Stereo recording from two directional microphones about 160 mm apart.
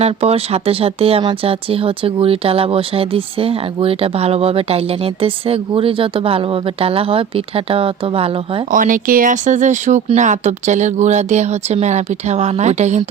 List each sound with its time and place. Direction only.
0.0 s speech: 40° right (ahead or behind)
8.7 s speech: 55° right (ahead or behind)